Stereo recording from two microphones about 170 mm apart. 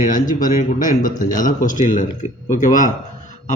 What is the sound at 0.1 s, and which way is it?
A man's voice, 50° left (ahead or behind).